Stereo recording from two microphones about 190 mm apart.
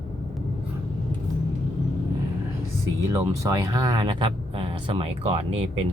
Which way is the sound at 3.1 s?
15° right (ahead or behind).